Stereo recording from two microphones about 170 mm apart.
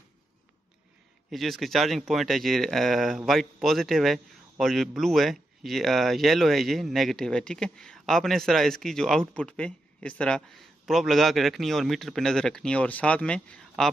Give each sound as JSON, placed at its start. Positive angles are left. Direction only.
{"t": 1.3, "sound": "speech", "side_deg": 0}